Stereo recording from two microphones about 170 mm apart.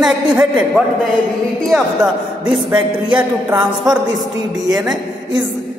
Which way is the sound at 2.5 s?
5° right (ahead or behind).